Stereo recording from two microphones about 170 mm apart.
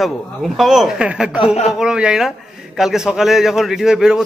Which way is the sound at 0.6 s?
Centre (ahead or behind).